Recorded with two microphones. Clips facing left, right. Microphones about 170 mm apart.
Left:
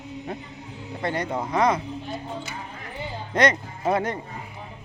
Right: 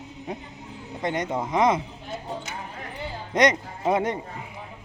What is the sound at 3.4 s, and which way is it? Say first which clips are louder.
Speech: right 1 dB; 20° right (ahead or behind).